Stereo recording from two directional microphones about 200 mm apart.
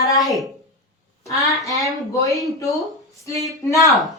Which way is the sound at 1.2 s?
15° left (ahead or behind).